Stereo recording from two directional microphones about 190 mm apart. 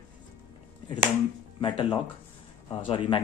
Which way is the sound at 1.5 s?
25° left (ahead or behind).